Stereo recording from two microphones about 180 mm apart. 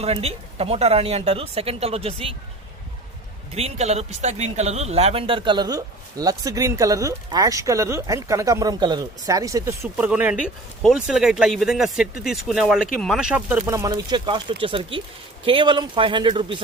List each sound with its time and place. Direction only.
0.0 s speech: 35° right (ahead or behind)
3.5 s speech: 35° right (ahead or behind)